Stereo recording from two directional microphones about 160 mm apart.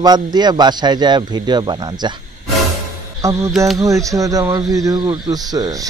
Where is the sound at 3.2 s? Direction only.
20° right (ahead or behind).